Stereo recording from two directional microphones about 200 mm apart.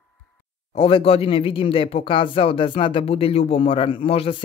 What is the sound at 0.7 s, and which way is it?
A man's voice, 30° left (ahead or behind).